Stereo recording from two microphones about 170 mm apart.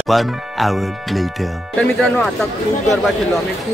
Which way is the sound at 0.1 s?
Centre (ahead or behind).